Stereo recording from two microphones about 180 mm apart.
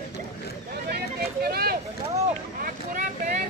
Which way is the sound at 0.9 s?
60° right (ahead or behind).